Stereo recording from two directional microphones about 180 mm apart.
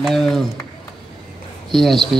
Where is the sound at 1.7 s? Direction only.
Centre (ahead or behind).